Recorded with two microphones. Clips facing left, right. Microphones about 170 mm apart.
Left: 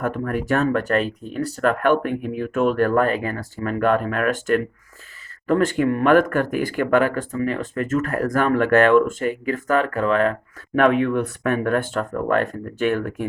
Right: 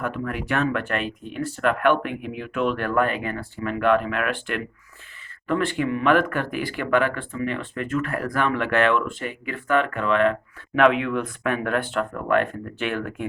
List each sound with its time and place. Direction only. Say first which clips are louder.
0.0 s speech: left 4 dB; 45° left (ahead or behind)